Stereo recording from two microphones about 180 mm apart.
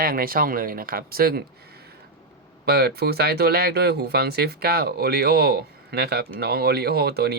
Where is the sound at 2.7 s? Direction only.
60° right (ahead or behind).